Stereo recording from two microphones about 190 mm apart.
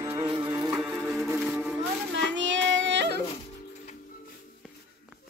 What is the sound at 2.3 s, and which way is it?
Yodeling, 75° right (ahead or behind).